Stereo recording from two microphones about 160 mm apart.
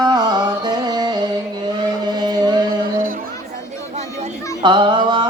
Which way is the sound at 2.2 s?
25° right (ahead or behind).